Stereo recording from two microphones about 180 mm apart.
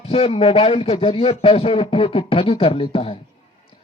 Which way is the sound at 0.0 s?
35° left (ahead or behind).